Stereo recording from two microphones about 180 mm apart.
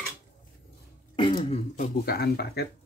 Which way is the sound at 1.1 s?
30° left (ahead or behind).